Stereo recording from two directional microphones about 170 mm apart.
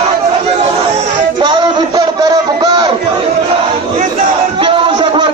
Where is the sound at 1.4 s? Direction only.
25° right (ahead or behind).